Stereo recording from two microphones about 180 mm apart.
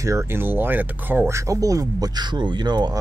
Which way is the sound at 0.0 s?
15° right (ahead or behind).